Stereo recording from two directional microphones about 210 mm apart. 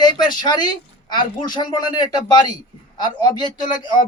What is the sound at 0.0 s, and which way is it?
A man's voice, 20° left (ahead or behind).